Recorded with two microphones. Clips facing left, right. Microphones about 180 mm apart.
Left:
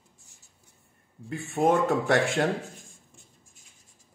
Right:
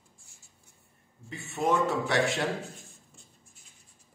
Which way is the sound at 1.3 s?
55° left (ahead or behind).